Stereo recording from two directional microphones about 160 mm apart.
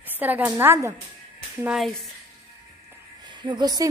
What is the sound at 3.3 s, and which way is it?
Speech, 30° right (ahead or behind).